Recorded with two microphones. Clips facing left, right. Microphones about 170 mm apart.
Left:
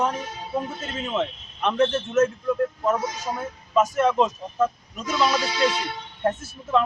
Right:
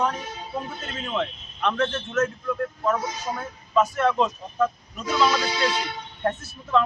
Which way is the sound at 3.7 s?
10° left (ahead or behind).